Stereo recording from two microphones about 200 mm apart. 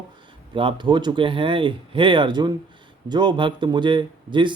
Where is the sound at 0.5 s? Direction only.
25° right (ahead or behind).